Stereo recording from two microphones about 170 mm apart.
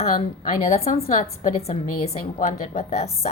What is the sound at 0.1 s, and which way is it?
A woman's voice, 50° left (ahead or behind).